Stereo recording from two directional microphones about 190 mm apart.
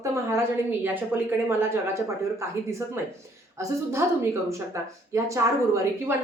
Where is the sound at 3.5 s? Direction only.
15° right (ahead or behind).